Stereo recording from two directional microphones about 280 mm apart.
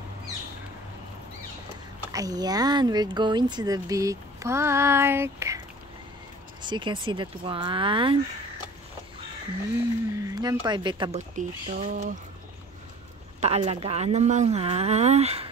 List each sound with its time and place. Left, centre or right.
2.1 s speech: centre
6.6 s speech: centre
10.1 s speech: centre
13.4 s speech: right